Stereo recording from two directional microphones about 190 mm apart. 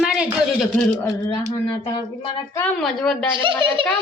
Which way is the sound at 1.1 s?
15° left (ahead or behind).